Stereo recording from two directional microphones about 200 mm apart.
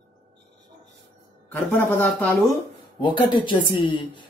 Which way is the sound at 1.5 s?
10° left (ahead or behind).